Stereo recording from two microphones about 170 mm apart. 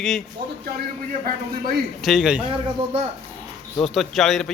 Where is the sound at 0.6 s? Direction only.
65° right (ahead or behind).